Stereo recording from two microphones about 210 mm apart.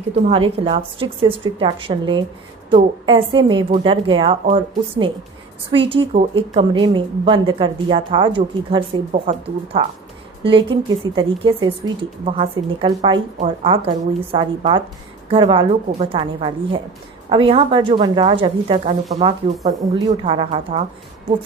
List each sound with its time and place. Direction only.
0.3 s a woman's voice: 25° right (ahead or behind)